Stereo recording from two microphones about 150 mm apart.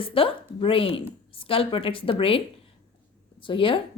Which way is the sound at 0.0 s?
35° left (ahead or behind).